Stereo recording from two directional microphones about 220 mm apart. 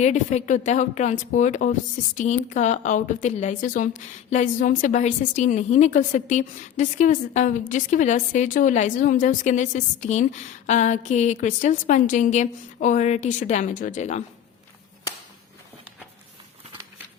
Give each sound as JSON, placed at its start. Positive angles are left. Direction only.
{"t": 0.0, "sound": "speech", "side_deg": 30}